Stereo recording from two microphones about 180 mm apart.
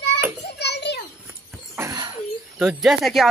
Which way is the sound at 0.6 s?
70° left (ahead or behind).